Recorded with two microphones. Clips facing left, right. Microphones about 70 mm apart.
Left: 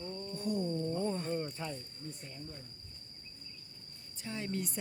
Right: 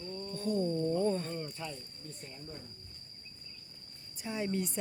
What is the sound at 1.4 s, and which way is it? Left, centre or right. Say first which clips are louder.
Speech: left 2 dB; left.